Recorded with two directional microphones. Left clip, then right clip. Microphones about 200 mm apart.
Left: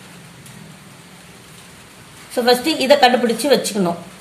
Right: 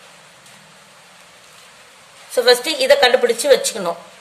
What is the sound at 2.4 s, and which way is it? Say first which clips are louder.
A woman's voice: even; 25° right (ahead or behind).